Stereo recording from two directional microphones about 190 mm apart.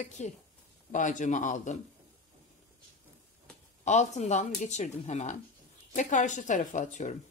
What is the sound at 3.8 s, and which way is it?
Speech, 40° left (ahead or behind).